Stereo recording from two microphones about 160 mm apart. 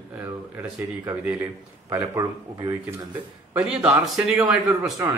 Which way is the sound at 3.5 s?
10° right (ahead or behind).